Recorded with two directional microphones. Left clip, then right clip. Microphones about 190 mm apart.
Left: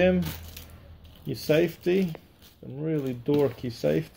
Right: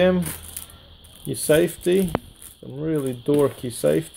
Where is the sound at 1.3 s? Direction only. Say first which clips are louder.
Right 5 dB; 40° right (ahead or behind).